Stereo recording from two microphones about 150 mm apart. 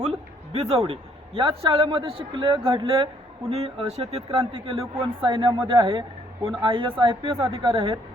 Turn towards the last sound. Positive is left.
turn(degrees=-40)  # may be behind; listen again after turning